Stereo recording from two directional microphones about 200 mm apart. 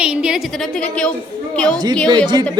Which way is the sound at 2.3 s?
20° right (ahead or behind).